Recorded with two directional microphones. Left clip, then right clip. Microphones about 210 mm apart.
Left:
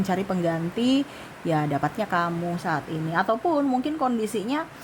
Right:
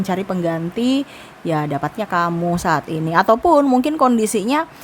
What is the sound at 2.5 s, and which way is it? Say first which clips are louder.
A woman's voice: right 9 dB; 30° right (ahead or behind).